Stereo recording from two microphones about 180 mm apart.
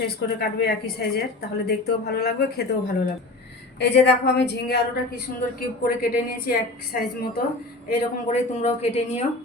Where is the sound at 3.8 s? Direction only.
65° left (ahead or behind).